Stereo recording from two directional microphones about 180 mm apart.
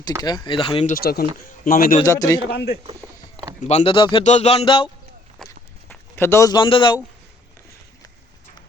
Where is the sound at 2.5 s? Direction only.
65° left (ahead or behind).